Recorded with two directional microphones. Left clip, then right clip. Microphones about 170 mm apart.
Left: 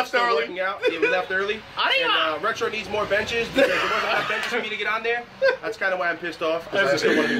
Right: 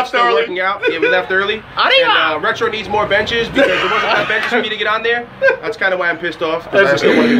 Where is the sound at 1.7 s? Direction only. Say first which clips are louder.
Right 10 dB; 20° right (ahead or behind).